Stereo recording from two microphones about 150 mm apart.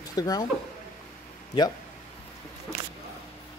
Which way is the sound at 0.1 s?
25° left (ahead or behind).